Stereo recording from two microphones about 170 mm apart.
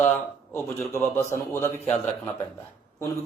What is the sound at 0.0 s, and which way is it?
A man's voice, 10° left (ahead or behind).